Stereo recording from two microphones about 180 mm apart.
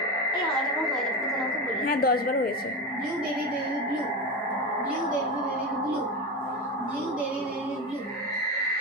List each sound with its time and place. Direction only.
1.9 s a woman's voice: 55° left (ahead or behind)